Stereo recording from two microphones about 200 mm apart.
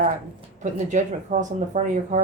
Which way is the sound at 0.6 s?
35° right (ahead or behind).